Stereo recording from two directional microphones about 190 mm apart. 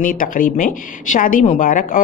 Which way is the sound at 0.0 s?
45° left (ahead or behind).